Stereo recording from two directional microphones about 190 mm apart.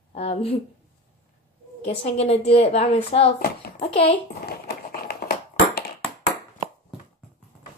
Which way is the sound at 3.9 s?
30° left (ahead or behind).